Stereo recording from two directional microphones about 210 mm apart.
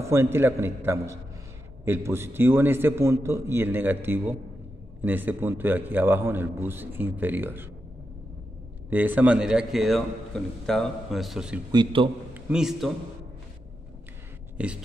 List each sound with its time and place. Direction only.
0.0 s a man's voice: 10° right (ahead or behind)
8.9 s a man's voice: 10° right (ahead or behind)
11.7 s a man's voice: 20° right (ahead or behind)
12.4 s a man's voice: 5° right (ahead or behind)
14.6 s a man's voice: 5° right (ahead or behind)